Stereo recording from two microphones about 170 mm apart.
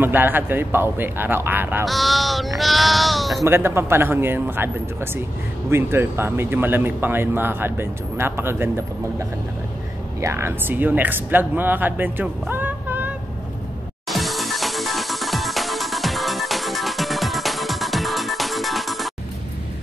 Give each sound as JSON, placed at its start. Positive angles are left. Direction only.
{"t": 0.0, "sound": "a man's voice", "side_deg": -10}
{"t": 1.9, "sound": "speech", "side_deg": 0}
{"t": 3.4, "sound": "a man's voice", "side_deg": -15}
{"t": 14.0, "sound": "music", "side_deg": 0}